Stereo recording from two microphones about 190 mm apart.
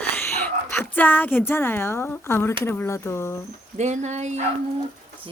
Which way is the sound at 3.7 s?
40° right (ahead or behind).